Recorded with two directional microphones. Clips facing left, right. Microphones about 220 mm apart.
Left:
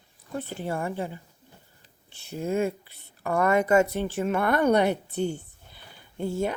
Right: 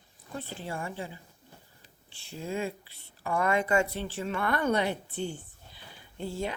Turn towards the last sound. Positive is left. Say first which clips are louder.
# left 6 dB
turn(degrees=45)  # may be behind; listen again after turning